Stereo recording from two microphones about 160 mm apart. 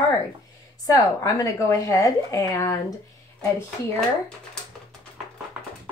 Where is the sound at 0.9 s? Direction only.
20° left (ahead or behind).